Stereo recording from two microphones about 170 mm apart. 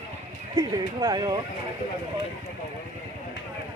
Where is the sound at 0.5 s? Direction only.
25° right (ahead or behind).